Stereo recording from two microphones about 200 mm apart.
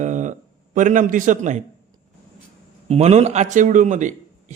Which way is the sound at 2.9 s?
30° right (ahead or behind).